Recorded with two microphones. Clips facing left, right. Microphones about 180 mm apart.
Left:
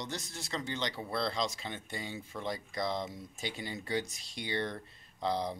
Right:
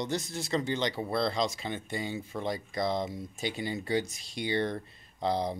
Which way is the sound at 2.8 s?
50° right (ahead or behind).